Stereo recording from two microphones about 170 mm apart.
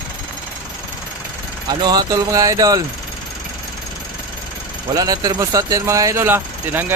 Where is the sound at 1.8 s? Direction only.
20° right (ahead or behind).